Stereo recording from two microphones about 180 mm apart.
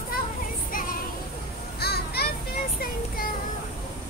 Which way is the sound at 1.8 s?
60° left (ahead or behind).